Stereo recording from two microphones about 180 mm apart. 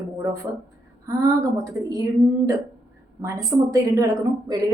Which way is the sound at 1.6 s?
20° right (ahead or behind).